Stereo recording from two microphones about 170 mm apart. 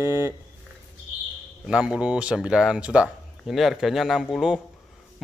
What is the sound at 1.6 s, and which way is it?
Speech, 5° right (ahead or behind).